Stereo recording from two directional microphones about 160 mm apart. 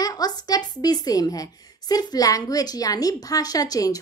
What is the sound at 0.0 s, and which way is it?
A woman's voice, 25° left (ahead or behind).